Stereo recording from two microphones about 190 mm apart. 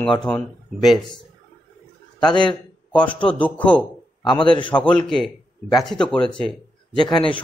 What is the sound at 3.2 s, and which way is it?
A man's voice, 5° left (ahead or behind).